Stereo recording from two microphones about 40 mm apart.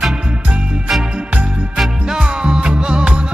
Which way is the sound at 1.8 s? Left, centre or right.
Centre.